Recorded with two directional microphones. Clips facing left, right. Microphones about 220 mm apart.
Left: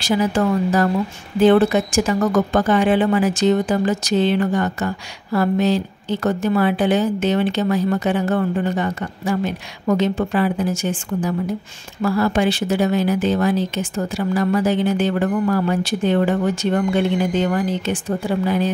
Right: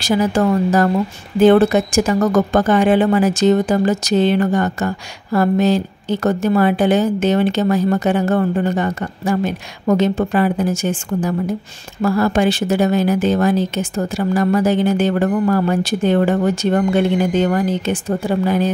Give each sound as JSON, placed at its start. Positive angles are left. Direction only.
{"t": 0.0, "sound": "speech", "side_deg": -40}